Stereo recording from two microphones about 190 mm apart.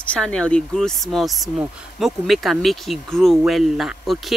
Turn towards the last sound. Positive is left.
turn(degrees=0)  # may be behind; listen again after turning